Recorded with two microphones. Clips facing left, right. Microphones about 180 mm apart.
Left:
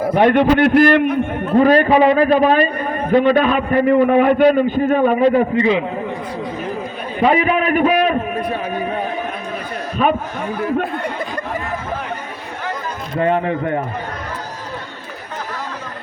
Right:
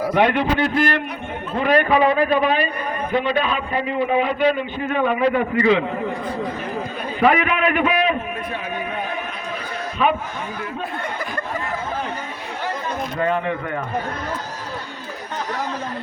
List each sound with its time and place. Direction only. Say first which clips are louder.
0.3 s a man's voice: left 8 dB; 60° left (ahead or behind)
0.8 s a man's voice: left 9 dB; 50° left (ahead or behind)
5.5 s speech: left 1 dB; 20° left (ahead or behind)
7.2 s a man's voice: left 3 dB; 30° left (ahead or behind)
10.0 s a man's voice: left 3 dB; 45° left (ahead or behind)
13.1 s speech: left 6 dB; 30° left (ahead or behind)